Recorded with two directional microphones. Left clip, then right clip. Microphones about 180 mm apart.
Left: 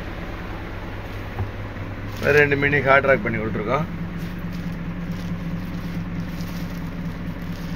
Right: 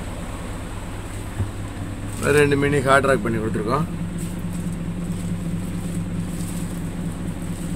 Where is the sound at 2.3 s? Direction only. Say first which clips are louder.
Left 1 dB; 10° right (ahead or behind).